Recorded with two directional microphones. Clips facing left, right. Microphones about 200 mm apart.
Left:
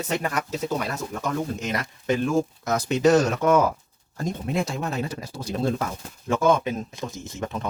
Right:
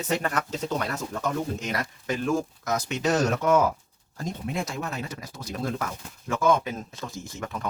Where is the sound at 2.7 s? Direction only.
30° left (ahead or behind).